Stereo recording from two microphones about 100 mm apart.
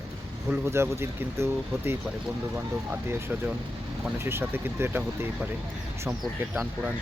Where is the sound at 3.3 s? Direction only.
15° right (ahead or behind).